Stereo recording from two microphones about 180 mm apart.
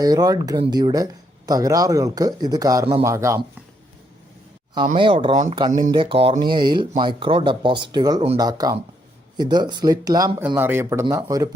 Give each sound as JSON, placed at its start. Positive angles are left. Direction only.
{"t": 0.0, "sound": "a man's voice", "side_deg": -20}
{"t": 4.9, "sound": "a man's voice", "side_deg": -30}